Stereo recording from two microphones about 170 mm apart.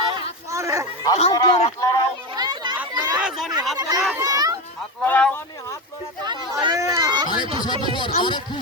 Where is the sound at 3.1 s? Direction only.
5° right (ahead or behind).